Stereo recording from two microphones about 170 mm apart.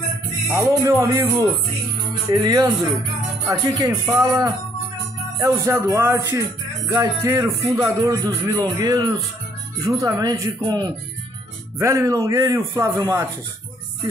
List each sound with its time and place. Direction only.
0.5 s a man's voice: 15° right (ahead or behind)